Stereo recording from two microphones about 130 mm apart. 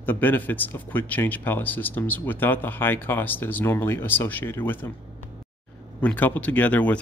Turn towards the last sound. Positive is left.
turn(degrees=10)  # may be behind; listen again after turning